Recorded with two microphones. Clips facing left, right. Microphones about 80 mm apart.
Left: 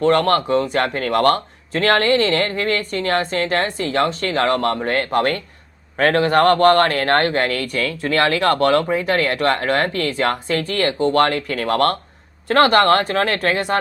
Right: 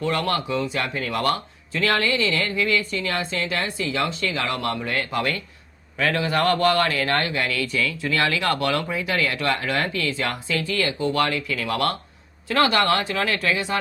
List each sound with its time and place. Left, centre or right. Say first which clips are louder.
0.0 s a man's voice: left 8 dB; left